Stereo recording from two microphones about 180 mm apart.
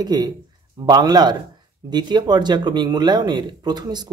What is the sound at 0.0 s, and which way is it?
Speech, 20° right (ahead or behind).